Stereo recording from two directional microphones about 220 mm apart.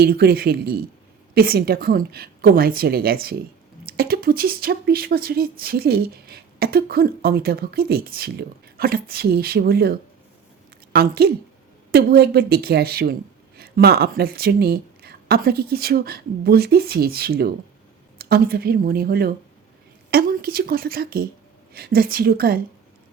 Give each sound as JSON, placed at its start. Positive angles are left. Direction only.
{"t": 0.0, "sound": "speech", "side_deg": -45}
{"t": 10.9, "sound": "speech", "side_deg": -45}